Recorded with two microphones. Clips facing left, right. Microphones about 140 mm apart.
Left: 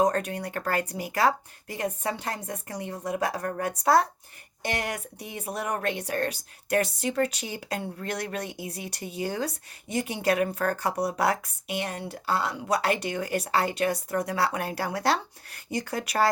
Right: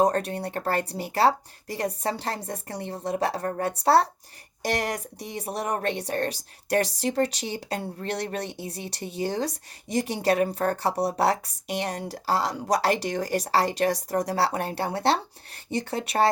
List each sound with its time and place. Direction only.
0.0 s speech: 35° right (ahead or behind)